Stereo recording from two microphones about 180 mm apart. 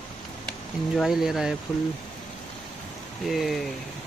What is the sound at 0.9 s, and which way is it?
Speech, centre (ahead or behind).